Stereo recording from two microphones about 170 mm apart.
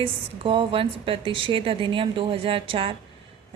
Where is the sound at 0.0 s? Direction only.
30° right (ahead or behind).